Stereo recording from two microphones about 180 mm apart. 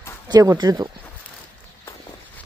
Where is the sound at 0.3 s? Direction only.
20° right (ahead or behind).